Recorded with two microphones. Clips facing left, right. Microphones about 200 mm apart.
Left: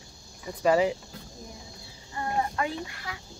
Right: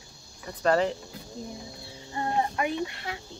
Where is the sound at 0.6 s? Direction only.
10° left (ahead or behind).